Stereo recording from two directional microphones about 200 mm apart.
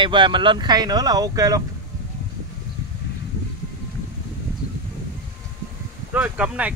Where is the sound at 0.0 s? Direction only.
25° right (ahead or behind).